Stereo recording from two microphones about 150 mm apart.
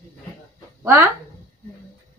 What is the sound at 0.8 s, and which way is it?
Speech, 15° right (ahead or behind).